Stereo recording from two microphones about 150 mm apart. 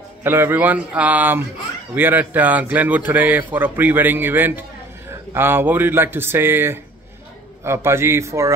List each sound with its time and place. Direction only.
0.2 s speech: 15° right (ahead or behind)